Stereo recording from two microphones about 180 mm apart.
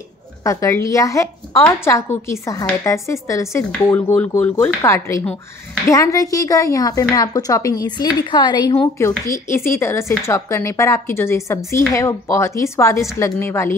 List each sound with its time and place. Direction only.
0.4 s a woman's voice: 15° left (ahead or behind)